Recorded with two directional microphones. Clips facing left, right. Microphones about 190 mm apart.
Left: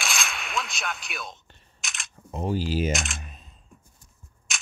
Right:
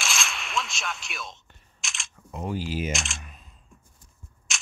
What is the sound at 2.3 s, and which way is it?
Speech, 30° left (ahead or behind).